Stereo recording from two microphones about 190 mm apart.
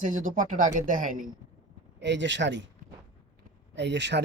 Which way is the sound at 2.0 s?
70° right (ahead or behind).